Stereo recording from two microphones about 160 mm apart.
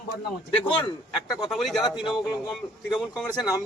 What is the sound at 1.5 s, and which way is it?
Speech, centre (ahead or behind).